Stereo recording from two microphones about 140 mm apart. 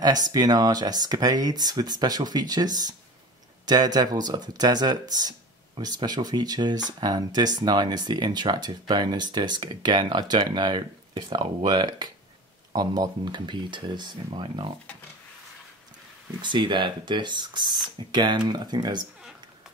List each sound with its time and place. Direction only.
0.0 s speech: 30° right (ahead or behind)
16.3 s speech: 35° right (ahead or behind)